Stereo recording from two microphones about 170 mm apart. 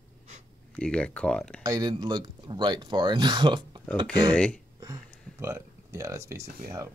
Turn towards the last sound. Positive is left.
turn(degrees=-15)  # may be behind; listen again after turning